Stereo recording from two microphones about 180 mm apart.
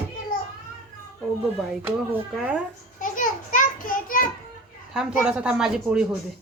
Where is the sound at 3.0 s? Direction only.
45° left (ahead or behind).